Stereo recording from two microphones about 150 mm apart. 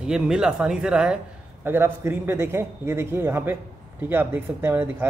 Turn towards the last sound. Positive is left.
turn(degrees=-15)  # may be behind; listen again after turning